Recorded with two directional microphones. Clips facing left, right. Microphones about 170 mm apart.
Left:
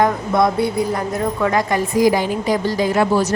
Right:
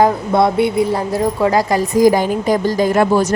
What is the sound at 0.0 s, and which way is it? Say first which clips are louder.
Speech: right 3 dB; 30° right (ahead or behind).